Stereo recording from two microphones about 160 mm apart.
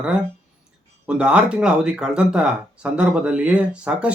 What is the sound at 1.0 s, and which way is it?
Speech, 5° right (ahead or behind).